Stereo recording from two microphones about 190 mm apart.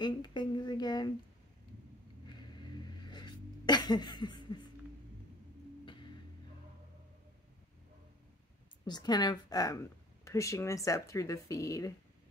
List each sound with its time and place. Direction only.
0.0 s a sound: 25° left (ahead or behind)
2.2 s sneeze: 20° left (ahead or behind)
8.8 s a woman's voice: 20° left (ahead or behind)